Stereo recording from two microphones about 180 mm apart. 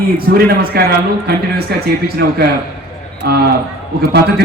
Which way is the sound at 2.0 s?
60° right (ahead or behind).